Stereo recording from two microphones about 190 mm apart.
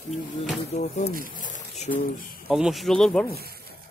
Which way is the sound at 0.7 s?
35° left (ahead or behind).